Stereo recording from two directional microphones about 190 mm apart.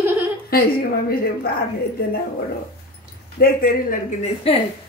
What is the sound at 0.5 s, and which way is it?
A woman's voice, 50° left (ahead or behind).